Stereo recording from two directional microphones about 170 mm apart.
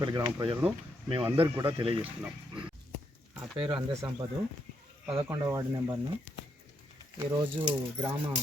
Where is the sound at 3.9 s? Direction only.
15° right (ahead or behind).